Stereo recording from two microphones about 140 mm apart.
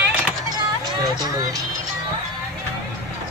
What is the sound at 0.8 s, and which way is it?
Music, 30° right (ahead or behind).